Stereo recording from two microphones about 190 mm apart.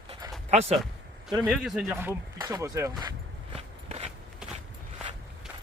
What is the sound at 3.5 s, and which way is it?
Walk, 30° right (ahead or behind).